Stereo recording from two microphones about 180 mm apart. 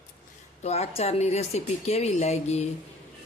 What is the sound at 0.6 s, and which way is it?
Speech, 35° left (ahead or behind).